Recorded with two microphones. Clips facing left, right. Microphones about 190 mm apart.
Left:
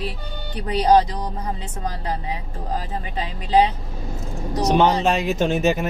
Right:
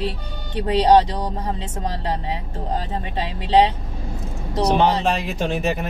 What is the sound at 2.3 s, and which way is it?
Speech, 30° right (ahead or behind).